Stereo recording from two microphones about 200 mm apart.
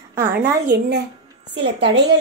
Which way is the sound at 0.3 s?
55° right (ahead or behind).